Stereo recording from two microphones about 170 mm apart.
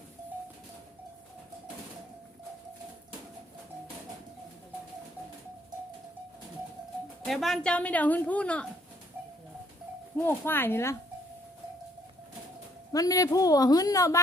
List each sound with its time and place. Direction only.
7.3 s a woman's voice: centre (ahead or behind)
10.2 s a woman's voice: 10° left (ahead or behind)
12.9 s a woman's voice: 20° left (ahead or behind)